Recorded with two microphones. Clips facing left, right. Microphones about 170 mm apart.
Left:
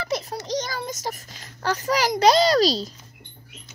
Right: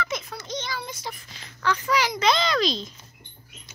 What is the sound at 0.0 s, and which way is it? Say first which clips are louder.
A child's voice: left 4 dB; 35° left (ahead or behind).